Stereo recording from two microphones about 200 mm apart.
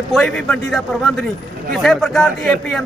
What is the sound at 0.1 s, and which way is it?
A man's voice, centre (ahead or behind).